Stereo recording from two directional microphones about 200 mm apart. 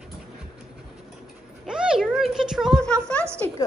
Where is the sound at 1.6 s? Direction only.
5° right (ahead or behind).